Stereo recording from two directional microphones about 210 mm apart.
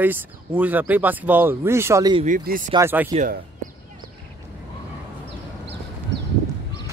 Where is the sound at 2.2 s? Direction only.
40° right (ahead or behind).